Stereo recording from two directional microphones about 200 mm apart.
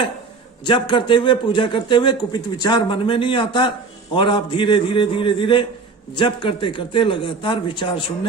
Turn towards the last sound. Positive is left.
turn(degrees=25)  # may be behind; listen again after turning